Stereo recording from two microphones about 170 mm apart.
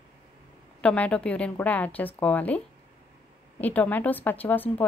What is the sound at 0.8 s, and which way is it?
A woman's voice, 5° left (ahead or behind).